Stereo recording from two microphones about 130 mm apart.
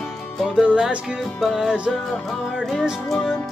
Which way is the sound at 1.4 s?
5° right (ahead or behind).